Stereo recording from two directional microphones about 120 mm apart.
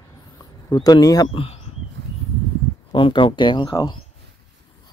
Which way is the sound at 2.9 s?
45° left (ahead or behind).